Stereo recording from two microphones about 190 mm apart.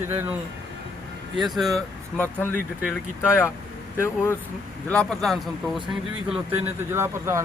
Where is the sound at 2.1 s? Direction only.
10° left (ahead or behind).